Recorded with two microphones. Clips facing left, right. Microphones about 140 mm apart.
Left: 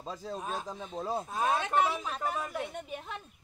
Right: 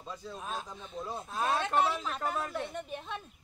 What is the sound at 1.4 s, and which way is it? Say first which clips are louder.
Speech: even; 15° left (ahead or behind).